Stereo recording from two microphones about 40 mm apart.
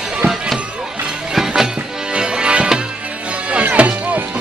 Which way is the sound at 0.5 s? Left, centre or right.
Right.